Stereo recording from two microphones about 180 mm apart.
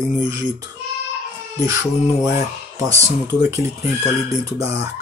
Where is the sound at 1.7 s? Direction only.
20° right (ahead or behind).